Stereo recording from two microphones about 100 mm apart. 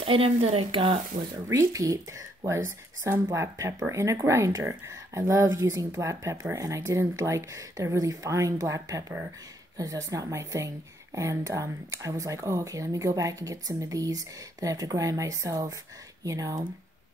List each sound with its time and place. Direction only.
0.0 s a woman's voice: 70° right (ahead or behind)
1.3 s speech: 35° right (ahead or behind)